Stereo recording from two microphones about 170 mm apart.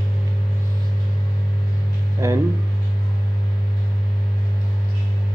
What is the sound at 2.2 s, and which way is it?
Speech, 20° right (ahead or behind).